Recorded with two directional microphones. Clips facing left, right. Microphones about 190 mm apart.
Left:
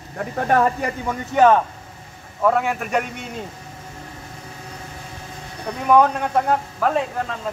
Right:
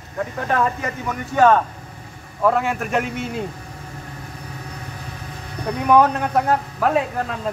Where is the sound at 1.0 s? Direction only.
20° left (ahead or behind).